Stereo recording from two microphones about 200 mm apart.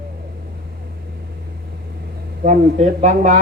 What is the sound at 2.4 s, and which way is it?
Speech, 35° right (ahead or behind).